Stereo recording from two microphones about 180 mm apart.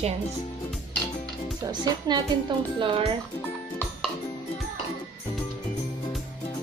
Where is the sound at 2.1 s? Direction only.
20° right (ahead or behind).